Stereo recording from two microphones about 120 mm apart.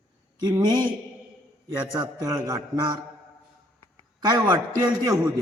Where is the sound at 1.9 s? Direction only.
30° right (ahead or behind).